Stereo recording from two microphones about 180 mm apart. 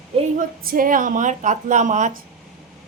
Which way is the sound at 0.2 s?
50° right (ahead or behind).